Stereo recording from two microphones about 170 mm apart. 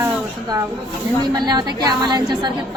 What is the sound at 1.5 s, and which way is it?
A woman's voice, 25° right (ahead or behind).